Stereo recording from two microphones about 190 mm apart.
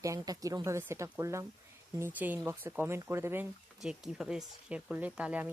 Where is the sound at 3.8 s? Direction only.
Centre (ahead or behind).